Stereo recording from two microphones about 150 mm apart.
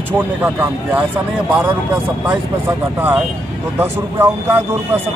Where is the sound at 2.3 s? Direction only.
15° right (ahead or behind).